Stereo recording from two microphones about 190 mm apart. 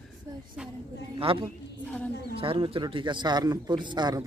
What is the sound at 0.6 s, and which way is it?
Speech, 5° right (ahead or behind).